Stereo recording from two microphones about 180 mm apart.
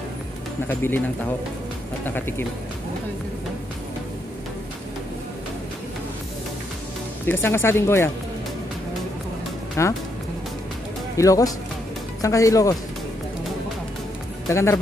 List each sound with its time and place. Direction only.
0.7 s speech: 10° left (ahead or behind)
2.0 s speech: 10° left (ahead or behind)
7.2 s speech: 15° left (ahead or behind)
9.8 s speech: 15° left (ahead or behind)
11.1 s speech: 20° left (ahead or behind)
14.5 s speech: 15° left (ahead or behind)